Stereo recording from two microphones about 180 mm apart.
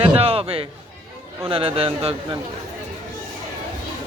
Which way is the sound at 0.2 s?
30° right (ahead or behind).